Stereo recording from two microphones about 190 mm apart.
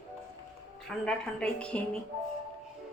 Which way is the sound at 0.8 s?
5° left (ahead or behind).